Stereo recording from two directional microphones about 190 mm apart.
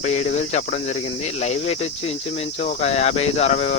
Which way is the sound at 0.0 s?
35° left (ahead or behind).